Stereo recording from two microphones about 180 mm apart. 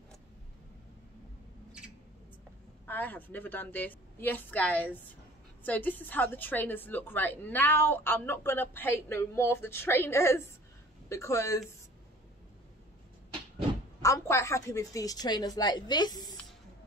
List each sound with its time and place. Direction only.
2.9 s a woman's voice: 10° left (ahead or behind)
14.0 s a woman's voice: 15° left (ahead or behind)